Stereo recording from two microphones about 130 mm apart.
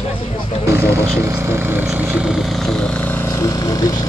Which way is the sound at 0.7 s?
20° right (ahead or behind).